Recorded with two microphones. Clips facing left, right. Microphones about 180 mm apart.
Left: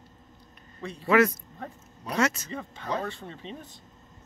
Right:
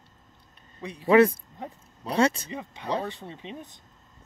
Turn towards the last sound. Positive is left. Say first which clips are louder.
# right 1 dB
turn(degrees=-15)  # may be behind; listen again after turning